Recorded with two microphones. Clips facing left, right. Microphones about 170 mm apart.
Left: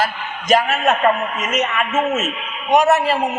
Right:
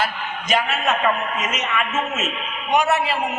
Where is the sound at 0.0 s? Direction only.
40° left (ahead or behind).